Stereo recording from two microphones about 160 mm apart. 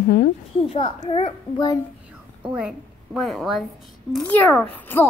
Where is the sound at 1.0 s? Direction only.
45° left (ahead or behind).